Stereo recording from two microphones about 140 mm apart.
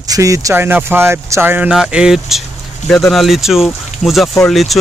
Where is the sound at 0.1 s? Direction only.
25° right (ahead or behind).